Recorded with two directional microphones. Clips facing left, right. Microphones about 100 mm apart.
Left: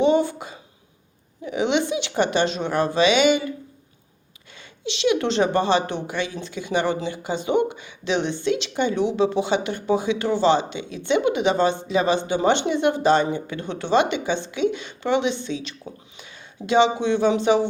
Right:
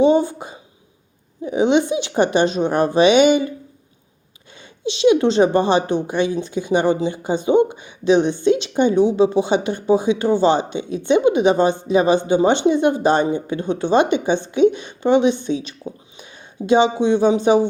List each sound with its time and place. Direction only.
0.0 s speech: 20° right (ahead or behind)
4.5 s speech: 25° right (ahead or behind)